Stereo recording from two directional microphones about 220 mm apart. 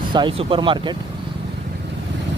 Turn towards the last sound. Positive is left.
turn(degrees=-20)  # may be behind; listen again after turning